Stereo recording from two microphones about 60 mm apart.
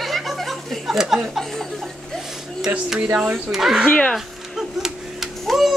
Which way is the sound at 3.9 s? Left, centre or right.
Centre.